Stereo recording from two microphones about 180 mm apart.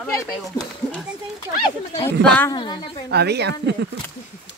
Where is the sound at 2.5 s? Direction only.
25° left (ahead or behind).